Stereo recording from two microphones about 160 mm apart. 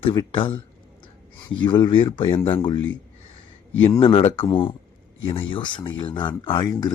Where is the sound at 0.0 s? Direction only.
30° left (ahead or behind).